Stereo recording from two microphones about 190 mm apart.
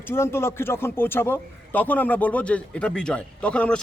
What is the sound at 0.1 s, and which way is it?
A man's voice, 15° left (ahead or behind).